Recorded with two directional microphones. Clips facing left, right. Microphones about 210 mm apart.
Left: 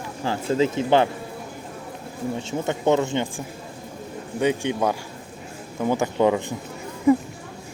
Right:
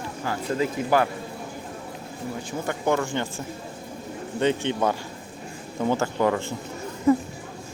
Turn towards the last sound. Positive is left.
turn(degrees=15)  # may be behind; listen again after turning